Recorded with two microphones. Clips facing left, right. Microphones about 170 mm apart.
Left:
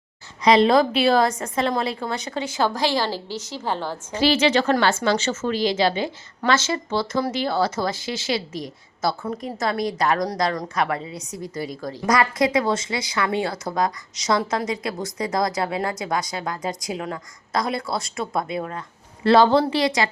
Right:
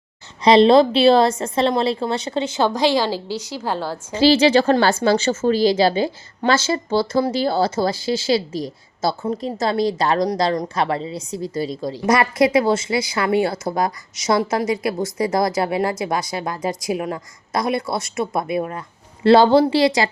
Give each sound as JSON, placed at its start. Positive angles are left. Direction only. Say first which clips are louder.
{"t": 0.4, "sound": "a woman's voice", "louder": "right 4 dB", "side_deg": -30}
{"t": 4.2, "sound": "a woman's voice", "louder": "right 5 dB", "side_deg": -30}